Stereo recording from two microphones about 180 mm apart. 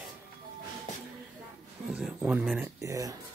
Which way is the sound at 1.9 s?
5° right (ahead or behind).